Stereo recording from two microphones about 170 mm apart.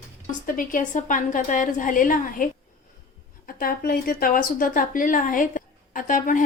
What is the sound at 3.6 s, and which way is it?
Speech, 60° left (ahead or behind).